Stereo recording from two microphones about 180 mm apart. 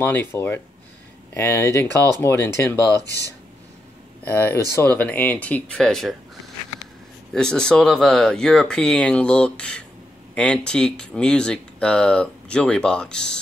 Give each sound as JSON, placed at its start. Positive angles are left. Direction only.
{"t": 0.0, "sound": "speech", "side_deg": 10}
{"t": 3.1, "sound": "speech", "side_deg": 70}
{"t": 4.2, "sound": "speech", "side_deg": 10}
{"t": 7.3, "sound": "speech", "side_deg": 5}